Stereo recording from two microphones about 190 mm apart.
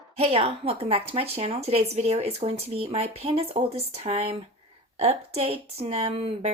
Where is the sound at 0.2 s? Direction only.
30° right (ahead or behind).